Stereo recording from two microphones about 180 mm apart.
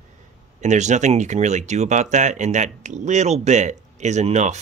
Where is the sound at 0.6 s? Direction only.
40° right (ahead or behind).